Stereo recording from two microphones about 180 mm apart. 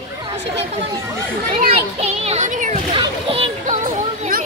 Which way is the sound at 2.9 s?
30° right (ahead or behind).